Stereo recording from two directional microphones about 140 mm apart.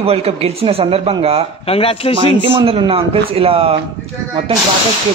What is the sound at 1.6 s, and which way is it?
Speech, 45° left (ahead or behind).